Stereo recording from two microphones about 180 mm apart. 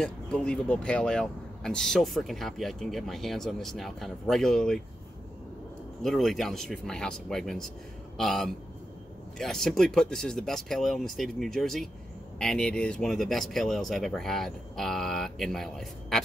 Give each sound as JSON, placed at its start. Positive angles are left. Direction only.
{"t": 0.0, "sound": "speech", "side_deg": 5}
{"t": 6.0, "sound": "speech", "side_deg": 0}